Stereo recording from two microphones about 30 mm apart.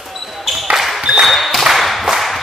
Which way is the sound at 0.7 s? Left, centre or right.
Centre.